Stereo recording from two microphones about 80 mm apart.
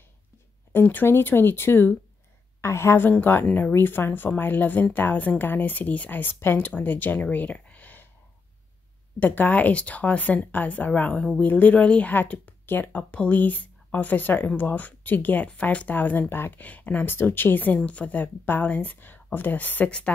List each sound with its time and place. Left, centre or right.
0.7 s a woman's voice: left
9.2 s speech: left